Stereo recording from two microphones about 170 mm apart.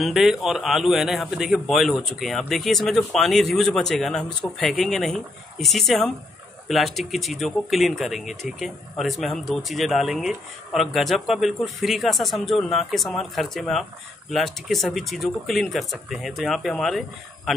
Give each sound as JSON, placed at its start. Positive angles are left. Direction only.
{"t": 0.0, "sound": "speech", "side_deg": 0}